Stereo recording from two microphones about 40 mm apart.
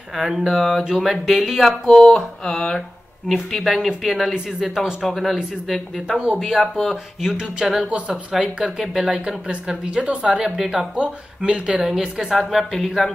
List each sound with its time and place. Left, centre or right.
0.1 s a sound: centre
0.5 s a woman's voice: centre
1.6 s mantra: centre
3.5 s a woman's voice: centre
6.1 s speech: right
6.8 s a woman's voice: centre
9.8 s speech: right
11.8 s a woman's voice: centre
12.4 s a woman's voice: centre